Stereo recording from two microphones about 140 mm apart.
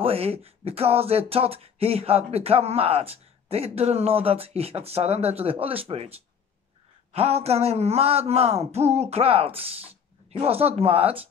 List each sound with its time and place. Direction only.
0.0 s speech: 45° right (ahead or behind)